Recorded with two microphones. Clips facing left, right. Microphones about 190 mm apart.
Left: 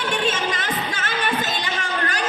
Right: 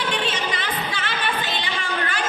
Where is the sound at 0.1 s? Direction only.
45° left (ahead or behind).